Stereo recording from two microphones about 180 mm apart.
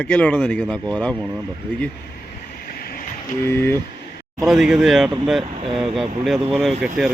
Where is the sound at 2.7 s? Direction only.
55° left (ahead or behind).